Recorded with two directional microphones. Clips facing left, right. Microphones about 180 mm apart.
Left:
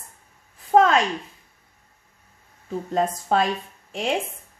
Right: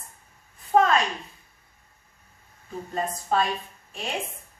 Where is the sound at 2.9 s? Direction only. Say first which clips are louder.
Left 4 dB; 90° left.